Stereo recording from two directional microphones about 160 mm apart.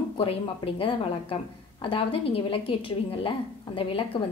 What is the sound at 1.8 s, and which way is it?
A woman's voice, 35° left (ahead or behind).